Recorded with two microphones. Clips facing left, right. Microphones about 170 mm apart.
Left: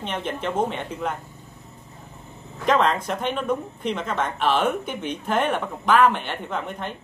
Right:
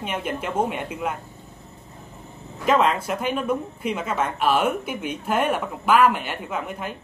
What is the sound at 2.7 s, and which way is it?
Speech, 5° right (ahead or behind).